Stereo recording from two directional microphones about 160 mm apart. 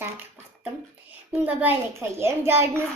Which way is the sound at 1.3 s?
10° right (ahead or behind).